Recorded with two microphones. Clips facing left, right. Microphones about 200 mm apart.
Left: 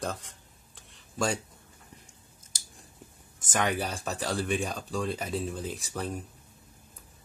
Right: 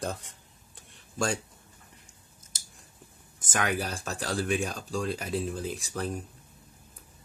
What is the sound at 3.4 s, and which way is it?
Speech, centre (ahead or behind).